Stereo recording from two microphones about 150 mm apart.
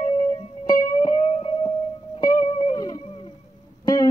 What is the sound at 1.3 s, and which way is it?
Music, 40° left (ahead or behind).